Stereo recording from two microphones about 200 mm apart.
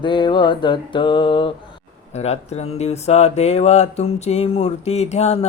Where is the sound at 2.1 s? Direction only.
35° left (ahead or behind).